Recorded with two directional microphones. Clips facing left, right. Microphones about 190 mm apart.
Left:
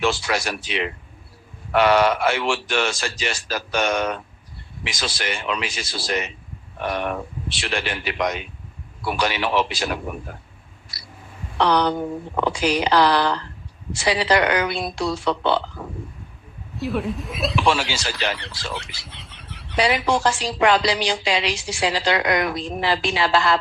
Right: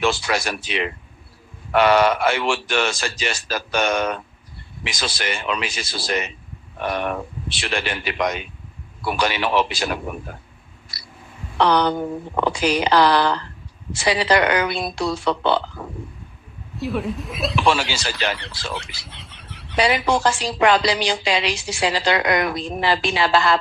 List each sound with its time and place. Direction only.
0.0 s a woman's voice: 55° right (ahead or behind)
7.6 s a woman's voice: 50° right (ahead or behind)
11.6 s a woman's voice: 55° right (ahead or behind)
16.7 s speech: centre (ahead or behind)
20.2 s a woman's voice: 55° right (ahead or behind)